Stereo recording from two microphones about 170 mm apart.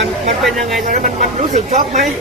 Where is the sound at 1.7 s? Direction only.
50° right (ahead or behind).